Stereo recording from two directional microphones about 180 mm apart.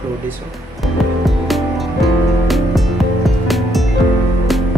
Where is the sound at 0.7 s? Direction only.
Centre (ahead or behind).